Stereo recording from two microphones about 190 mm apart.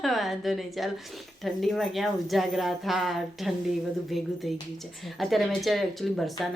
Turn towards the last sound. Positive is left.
turn(degrees=0)  # may be behind; listen again after turning